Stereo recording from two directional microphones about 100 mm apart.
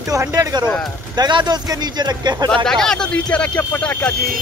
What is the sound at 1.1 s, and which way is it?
Speech, 45° right (ahead or behind).